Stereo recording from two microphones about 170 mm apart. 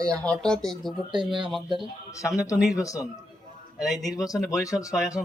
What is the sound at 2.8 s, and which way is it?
Speech, 20° left (ahead or behind).